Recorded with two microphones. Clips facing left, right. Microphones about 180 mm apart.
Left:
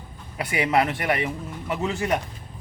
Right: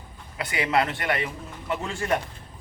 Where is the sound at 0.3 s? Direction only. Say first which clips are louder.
Left 2 dB; 25° left (ahead or behind).